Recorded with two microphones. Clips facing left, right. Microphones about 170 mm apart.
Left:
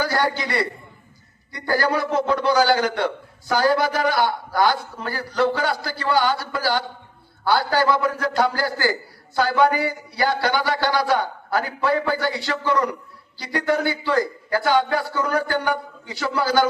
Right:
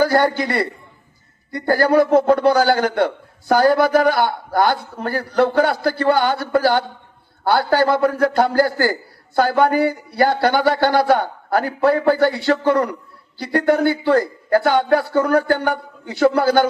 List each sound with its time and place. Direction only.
0.0 s a man's voice: 50° right (ahead or behind)